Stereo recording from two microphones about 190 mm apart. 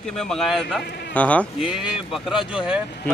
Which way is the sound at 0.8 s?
60° left (ahead or behind).